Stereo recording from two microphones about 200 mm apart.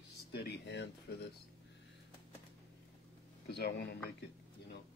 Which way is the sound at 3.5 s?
55° left (ahead or behind).